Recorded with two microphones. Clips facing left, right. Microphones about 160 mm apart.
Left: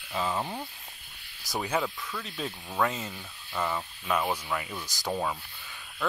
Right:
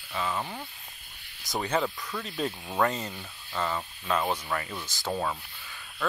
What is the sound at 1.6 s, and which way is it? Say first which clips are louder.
Speech: right 2 dB; centre (ahead or behind).